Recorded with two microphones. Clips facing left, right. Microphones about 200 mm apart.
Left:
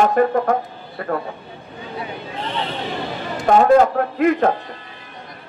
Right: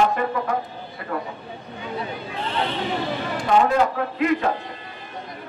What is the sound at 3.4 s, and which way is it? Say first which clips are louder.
A man's voice: left 6 dB; 45° left (ahead or behind).